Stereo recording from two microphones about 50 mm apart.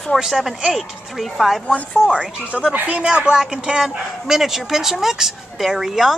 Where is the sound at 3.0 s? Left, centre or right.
Right.